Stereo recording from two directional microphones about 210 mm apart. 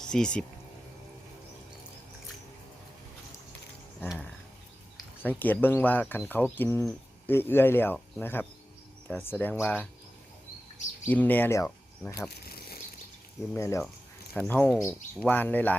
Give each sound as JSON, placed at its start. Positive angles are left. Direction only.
{"t": 0.1, "sound": "speech", "side_deg": 5}
{"t": 5.2, "sound": "speech", "side_deg": 10}
{"t": 11.1, "sound": "speech", "side_deg": 10}
{"t": 12.3, "sound": "a sound", "side_deg": 50}
{"t": 13.5, "sound": "speech", "side_deg": 15}